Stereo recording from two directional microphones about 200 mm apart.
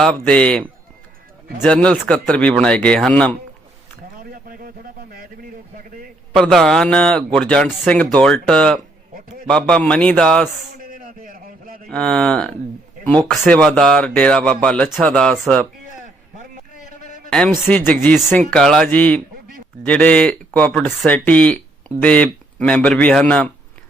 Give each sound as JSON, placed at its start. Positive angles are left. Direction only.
{"t": 0.0, "sound": "speech", "side_deg": 5}
{"t": 1.6, "sound": "speech", "side_deg": 5}
{"t": 4.2, "sound": "a sound", "side_deg": -45}
{"t": 6.3, "sound": "speech", "side_deg": 0}
{"t": 10.8, "sound": "a sound", "side_deg": -45}
{"t": 11.9, "sound": "speech", "side_deg": 5}
{"t": 17.2, "sound": "speech", "side_deg": 5}